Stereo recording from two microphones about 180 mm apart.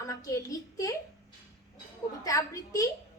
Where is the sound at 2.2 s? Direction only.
20° left (ahead or behind).